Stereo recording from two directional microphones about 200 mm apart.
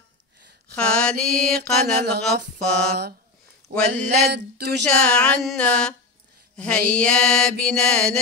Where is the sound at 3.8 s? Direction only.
50° right (ahead or behind).